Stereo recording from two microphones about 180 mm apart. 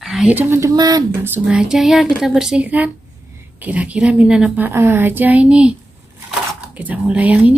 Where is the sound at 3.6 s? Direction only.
10° right (ahead or behind).